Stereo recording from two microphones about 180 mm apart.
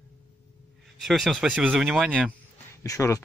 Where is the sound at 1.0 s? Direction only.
Centre (ahead or behind).